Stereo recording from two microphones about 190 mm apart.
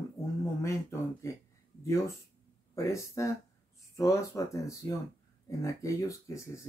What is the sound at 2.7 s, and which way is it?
Speech, 15° left (ahead or behind).